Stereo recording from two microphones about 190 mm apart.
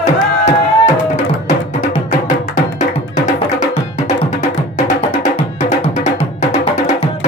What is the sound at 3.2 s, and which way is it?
Music, 40° left (ahead or behind).